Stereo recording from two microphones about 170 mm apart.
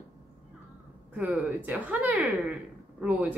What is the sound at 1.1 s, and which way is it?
A woman's voice, 10° right (ahead or behind).